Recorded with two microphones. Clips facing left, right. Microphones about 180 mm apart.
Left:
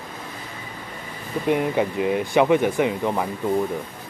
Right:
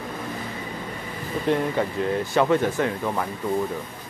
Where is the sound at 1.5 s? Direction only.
15° left (ahead or behind).